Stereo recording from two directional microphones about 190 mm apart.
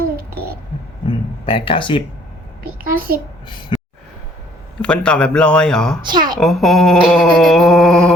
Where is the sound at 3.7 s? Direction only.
25° left (ahead or behind).